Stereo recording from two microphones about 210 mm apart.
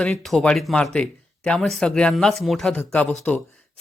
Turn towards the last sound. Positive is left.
turn(degrees=5)  # may be behind; listen again after turning